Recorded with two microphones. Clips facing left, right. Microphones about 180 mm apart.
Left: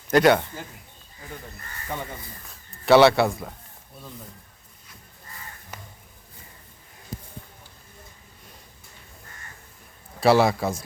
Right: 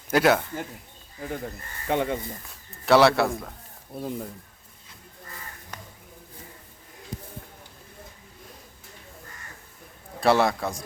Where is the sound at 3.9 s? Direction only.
50° right (ahead or behind).